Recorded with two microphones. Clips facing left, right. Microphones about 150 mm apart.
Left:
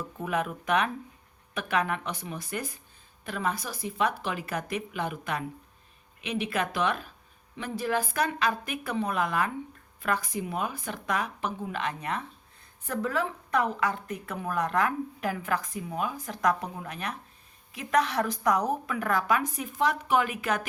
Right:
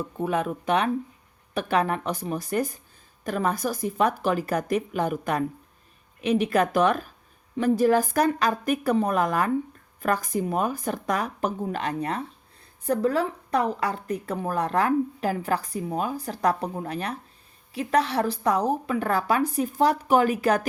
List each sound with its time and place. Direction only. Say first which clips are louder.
0.0 s a woman's voice: right 4 dB; 30° right (ahead or behind)